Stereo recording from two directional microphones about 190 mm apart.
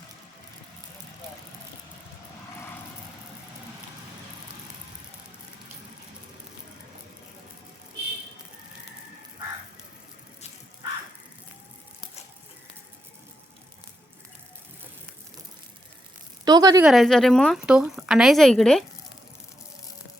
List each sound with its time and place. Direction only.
16.4 s a woman's voice: 20° right (ahead or behind)
16.8 s speech: centre (ahead or behind)